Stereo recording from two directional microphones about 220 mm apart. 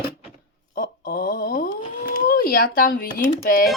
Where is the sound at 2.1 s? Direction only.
40° left (ahead or behind).